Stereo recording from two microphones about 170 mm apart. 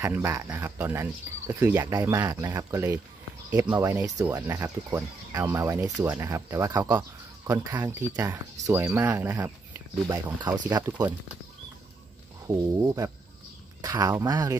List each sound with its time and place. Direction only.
0.0 s speech: 15° right (ahead or behind)
12.4 s speech: 20° right (ahead or behind)